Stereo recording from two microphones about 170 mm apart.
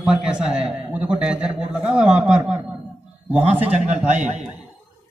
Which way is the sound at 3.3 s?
10° right (ahead or behind).